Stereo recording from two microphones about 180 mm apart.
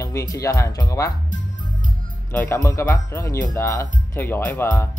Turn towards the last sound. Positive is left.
turn(degrees=10)  # may be behind; listen again after turning